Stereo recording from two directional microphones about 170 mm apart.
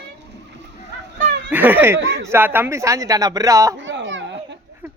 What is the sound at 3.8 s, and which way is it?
Children playing, 90° right.